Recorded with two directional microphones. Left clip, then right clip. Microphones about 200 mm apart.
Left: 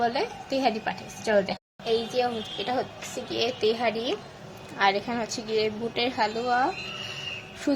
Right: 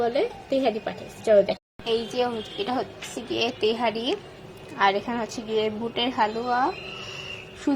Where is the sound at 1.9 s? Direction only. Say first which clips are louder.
Even; 10° right (ahead or behind).